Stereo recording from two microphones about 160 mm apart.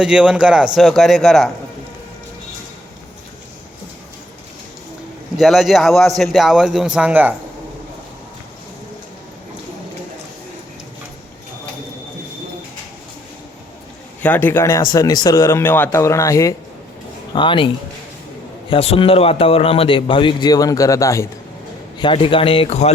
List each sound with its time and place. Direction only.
0.0 s a man's voice: 5° right (ahead or behind)
5.4 s a man's voice: centre (ahead or behind)
14.2 s speech: 10° left (ahead or behind)
17.3 s a man's voice: 30° left (ahead or behind)
18.7 s a man's voice: 35° left (ahead or behind); by 21.2 s 20° left (ahead or behind)
21.9 s a man's voice: 30° left (ahead or behind)